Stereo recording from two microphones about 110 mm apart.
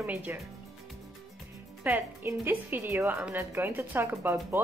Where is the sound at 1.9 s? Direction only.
20° right (ahead or behind).